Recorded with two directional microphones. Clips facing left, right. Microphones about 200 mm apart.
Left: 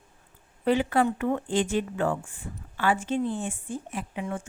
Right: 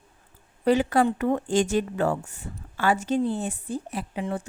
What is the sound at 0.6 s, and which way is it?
A woman's voice, 40° right (ahead or behind).